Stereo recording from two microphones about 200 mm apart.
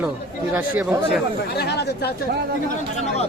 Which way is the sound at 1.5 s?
55° left (ahead or behind).